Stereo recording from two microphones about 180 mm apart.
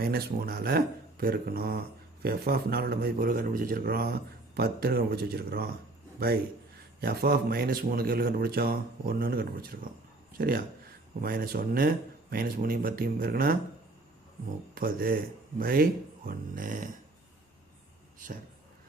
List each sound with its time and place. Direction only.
0.0 s a man's voice: 60° right (ahead or behind)
6.7 s a man's voice: 60° right (ahead or behind)
14.8 s speech: 55° right (ahead or behind)